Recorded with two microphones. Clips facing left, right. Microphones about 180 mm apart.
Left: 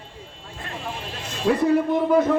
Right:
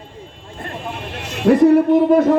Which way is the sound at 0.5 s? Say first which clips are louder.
Right 4 dB; 55° right (ahead or behind).